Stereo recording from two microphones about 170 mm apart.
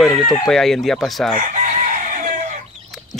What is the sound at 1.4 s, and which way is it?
Chicken, 50° right (ahead or behind).